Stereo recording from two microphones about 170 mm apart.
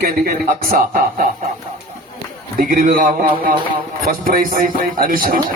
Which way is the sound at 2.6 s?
55° right (ahead or behind).